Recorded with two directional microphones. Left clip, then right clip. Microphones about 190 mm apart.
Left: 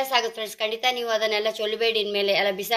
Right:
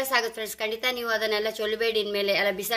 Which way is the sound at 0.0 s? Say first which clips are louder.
Left 2 dB; 55° right (ahead or behind).